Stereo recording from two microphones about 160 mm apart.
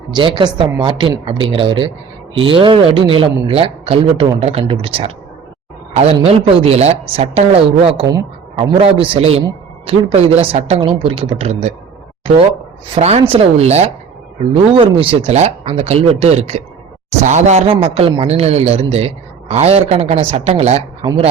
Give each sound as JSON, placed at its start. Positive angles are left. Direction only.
{"t": 0.1, "sound": "a woman's voice", "side_deg": -30}
{"t": 13.0, "sound": "a man's voice", "side_deg": -40}